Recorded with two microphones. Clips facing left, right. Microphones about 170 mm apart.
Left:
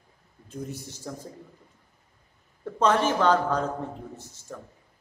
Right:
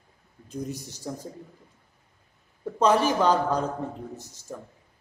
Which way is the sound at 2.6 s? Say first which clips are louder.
Right 1 dB; 10° right (ahead or behind).